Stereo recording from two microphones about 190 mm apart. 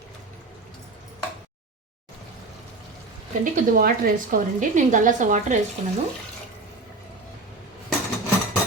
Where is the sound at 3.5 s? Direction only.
50° right (ahead or behind).